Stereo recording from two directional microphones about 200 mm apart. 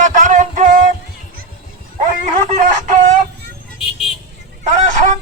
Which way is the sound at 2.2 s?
35° right (ahead or behind).